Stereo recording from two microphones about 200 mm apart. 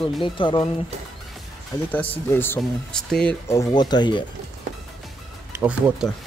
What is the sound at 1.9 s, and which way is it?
Speech, 10° left (ahead or behind).